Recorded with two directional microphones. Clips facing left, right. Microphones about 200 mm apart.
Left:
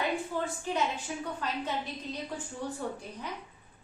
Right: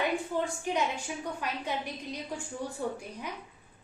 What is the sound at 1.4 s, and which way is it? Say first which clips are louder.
Speech: even; 10° right (ahead or behind).